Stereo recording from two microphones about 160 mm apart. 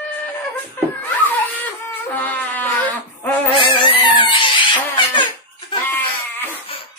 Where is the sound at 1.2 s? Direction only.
10° left (ahead or behind).